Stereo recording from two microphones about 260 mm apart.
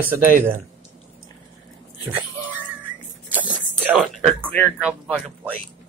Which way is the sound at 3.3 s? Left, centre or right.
Centre.